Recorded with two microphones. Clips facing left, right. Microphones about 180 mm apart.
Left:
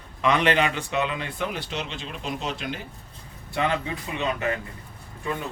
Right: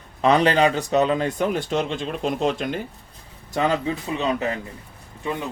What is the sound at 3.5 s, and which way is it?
Speech, 40° right (ahead or behind).